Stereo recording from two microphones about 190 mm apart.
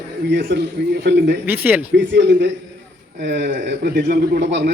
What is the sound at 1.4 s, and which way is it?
Speech, 10° right (ahead or behind).